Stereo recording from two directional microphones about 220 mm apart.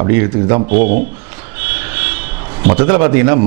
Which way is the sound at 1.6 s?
10° right (ahead or behind).